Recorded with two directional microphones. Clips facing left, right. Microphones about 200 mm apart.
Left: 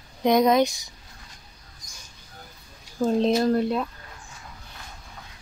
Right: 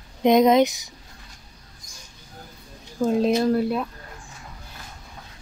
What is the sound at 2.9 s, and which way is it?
Speech, 5° right (ahead or behind).